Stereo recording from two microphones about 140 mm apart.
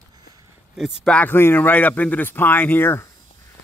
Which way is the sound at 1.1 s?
10° left (ahead or behind).